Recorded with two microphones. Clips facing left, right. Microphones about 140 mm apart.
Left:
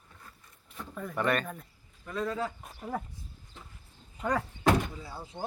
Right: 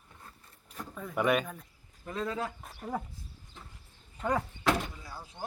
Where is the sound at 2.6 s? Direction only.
Centre (ahead or behind).